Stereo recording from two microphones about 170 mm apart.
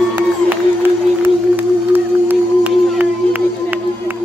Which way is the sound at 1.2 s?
10° right (ahead or behind).